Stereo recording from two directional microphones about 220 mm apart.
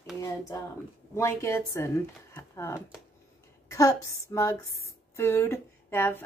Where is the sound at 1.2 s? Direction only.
15° left (ahead or behind).